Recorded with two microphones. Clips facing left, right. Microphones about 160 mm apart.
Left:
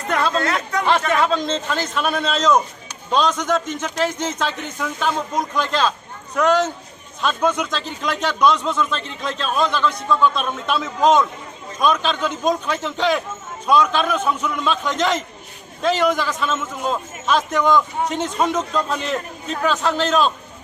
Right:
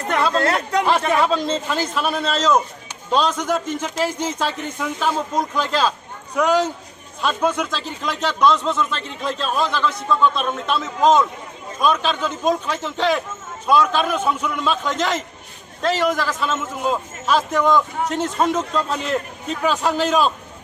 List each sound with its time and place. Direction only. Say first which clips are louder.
0.1 s chatter: even; 5° right (ahead or behind)
0.4 s speech: right 3 dB; 30° right (ahead or behind)
0.9 s a man's voice: left 1 dB; 5° right (ahead or behind)